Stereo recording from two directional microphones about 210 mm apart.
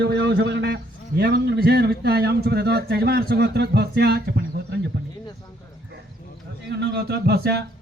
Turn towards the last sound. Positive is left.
turn(degrees=-50)  # may be behind; listen again after turning